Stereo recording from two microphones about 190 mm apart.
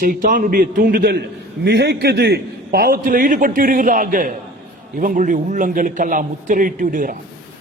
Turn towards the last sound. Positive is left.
turn(degrees=-45)  # may be behind; listen again after turning